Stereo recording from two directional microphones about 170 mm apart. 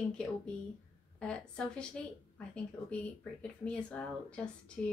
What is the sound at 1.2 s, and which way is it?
Speech, 5° left (ahead or behind).